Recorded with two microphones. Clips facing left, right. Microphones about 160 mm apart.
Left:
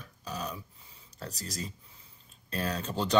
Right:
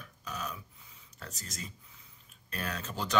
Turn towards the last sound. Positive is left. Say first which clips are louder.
# left 5 dB
turn(degrees=30)  # may be behind; listen again after turning